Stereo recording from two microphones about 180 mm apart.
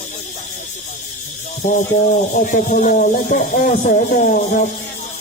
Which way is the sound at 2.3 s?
45° left (ahead or behind).